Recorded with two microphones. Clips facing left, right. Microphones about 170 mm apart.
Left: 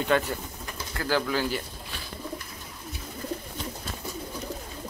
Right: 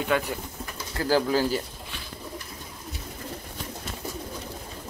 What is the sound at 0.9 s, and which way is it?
Speech, 35° right (ahead or behind).